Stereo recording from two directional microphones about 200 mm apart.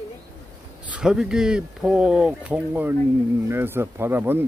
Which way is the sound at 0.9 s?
5° right (ahead or behind).